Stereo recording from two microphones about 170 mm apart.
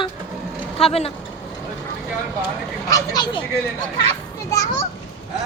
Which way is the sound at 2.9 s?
25° left (ahead or behind).